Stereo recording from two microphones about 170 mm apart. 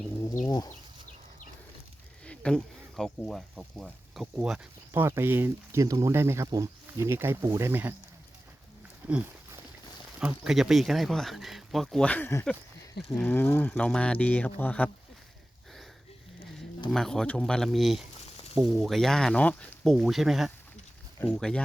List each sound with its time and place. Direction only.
0.4 s speech: 25° left (ahead or behind)
2.2 s speech: 5° left (ahead or behind); by 7.9 s 10° right (ahead or behind)
9.0 s speech: 10° right (ahead or behind); by 14.8 s 10° left (ahead or behind)
16.9 s speech: 5° left (ahead or behind)